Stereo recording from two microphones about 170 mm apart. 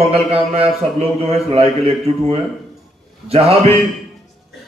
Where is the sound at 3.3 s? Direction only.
35° right (ahead or behind).